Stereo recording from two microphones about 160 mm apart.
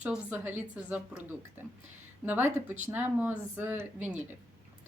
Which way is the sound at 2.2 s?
10° right (ahead or behind).